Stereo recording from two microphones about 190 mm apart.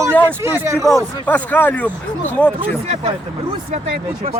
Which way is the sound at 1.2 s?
10° left (ahead or behind).